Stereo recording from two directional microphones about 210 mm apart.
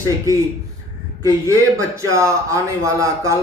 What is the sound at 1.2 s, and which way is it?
Speech, 15° right (ahead or behind).